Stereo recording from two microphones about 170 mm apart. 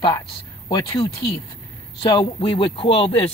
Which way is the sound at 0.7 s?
25° left (ahead or behind).